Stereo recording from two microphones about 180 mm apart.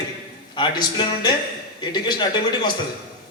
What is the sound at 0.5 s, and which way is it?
A man's voice, 25° left (ahead or behind).